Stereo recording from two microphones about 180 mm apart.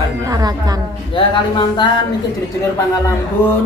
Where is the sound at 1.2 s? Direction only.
25° left (ahead or behind).